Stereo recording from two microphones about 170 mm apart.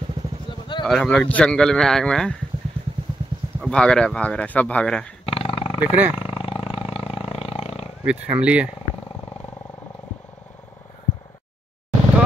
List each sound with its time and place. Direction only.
0.5 s a sound: 25° left (ahead or behind)
0.8 s a man's voice: 5° left (ahead or behind)
3.6 s a man's voice: 5° left (ahead or behind)
5.2 s dog: 35° left (ahead or behind)
6.1 s roar: 35° left (ahead or behind)
8.0 s speech: 5° right (ahead or behind)